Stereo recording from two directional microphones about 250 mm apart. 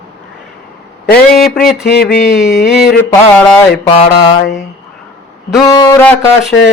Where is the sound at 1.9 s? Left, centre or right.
Left.